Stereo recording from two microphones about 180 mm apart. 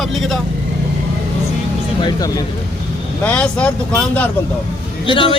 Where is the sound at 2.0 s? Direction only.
20° left (ahead or behind).